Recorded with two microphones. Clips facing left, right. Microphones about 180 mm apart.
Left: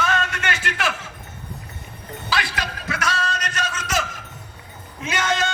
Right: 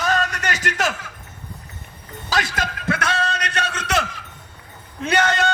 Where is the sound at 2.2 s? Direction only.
45° right (ahead or behind); by 5.5 s 65° right (ahead or behind).